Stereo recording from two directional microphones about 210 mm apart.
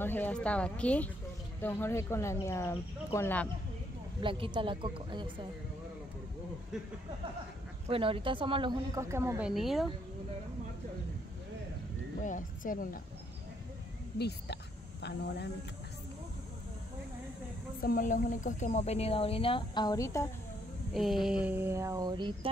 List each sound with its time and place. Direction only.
0.0 s speech: 10° left (ahead or behind)
4.2 s a woman's voice: 25° right (ahead or behind)
7.9 s a woman's voice: 25° right (ahead or behind)
9.5 s speech: centre (ahead or behind)
12.2 s a woman's voice: 40° left (ahead or behind)
14.1 s a woman's voice: 50° left (ahead or behind)
17.8 s speech: 40° left (ahead or behind); by 20.2 s 15° left (ahead or behind)
20.9 s speech: centre (ahead or behind); by 22.5 s 20° right (ahead or behind)